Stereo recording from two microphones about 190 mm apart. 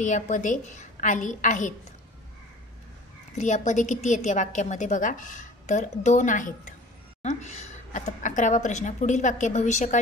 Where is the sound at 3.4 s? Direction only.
40° left (ahead or behind).